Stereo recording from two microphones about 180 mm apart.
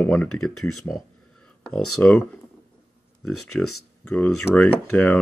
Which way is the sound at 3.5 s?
5° left (ahead or behind).